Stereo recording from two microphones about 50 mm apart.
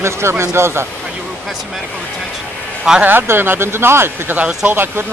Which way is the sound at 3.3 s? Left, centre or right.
Right.